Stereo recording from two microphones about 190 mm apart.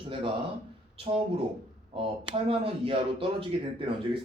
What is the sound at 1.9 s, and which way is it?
A man's voice, 30° right (ahead or behind).